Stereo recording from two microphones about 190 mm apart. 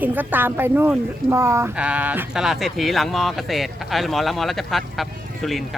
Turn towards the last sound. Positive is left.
turn(degrees=0)  # may be behind; listen again after turning